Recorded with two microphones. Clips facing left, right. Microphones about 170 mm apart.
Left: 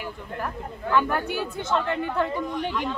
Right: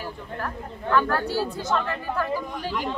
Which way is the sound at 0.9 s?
15° left (ahead or behind).